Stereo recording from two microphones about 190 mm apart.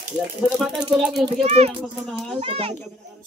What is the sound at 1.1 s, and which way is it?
A child's voice, 35° right (ahead or behind).